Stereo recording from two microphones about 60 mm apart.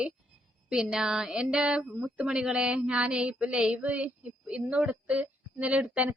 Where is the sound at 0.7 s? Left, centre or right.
Centre.